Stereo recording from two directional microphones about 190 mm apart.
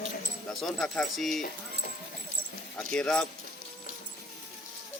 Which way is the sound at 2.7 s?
5° left (ahead or behind).